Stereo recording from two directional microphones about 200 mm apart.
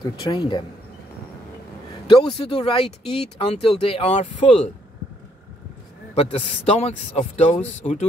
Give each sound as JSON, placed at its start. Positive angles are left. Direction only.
{"t": 0.0, "sound": "speech", "side_deg": 20}
{"t": 2.0, "sound": "speech", "side_deg": 25}
{"t": 6.1, "sound": "a man's voice", "side_deg": 30}